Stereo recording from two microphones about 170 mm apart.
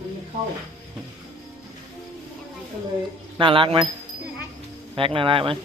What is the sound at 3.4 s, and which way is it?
Speech, 30° right (ahead or behind).